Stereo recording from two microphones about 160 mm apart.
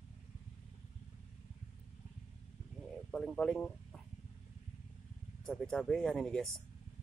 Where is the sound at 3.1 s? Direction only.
5° left (ahead or behind).